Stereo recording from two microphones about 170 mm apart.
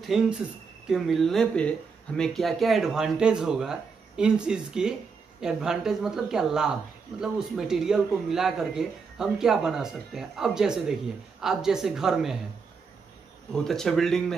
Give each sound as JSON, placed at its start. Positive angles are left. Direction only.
{"t": 0.0, "sound": "a man's voice", "side_deg": 0}
{"t": 13.5, "sound": "a man's voice", "side_deg": 0}